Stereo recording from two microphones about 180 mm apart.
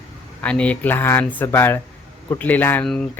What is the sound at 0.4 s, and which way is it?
Speech, 5° left (ahead or behind).